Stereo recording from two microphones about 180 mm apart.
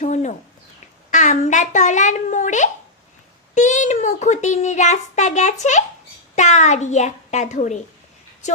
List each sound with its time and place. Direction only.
0.0 s a child's voice: 40° left (ahead or behind)